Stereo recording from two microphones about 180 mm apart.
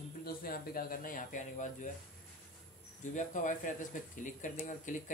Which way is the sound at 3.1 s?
45° left (ahead or behind).